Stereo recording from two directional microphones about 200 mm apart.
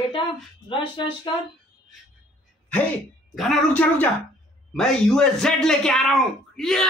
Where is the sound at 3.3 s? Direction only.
Centre (ahead or behind).